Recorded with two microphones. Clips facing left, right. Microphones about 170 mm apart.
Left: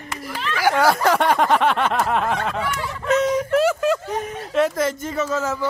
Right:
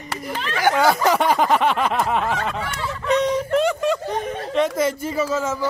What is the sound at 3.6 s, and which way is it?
Speech, 5° left (ahead or behind).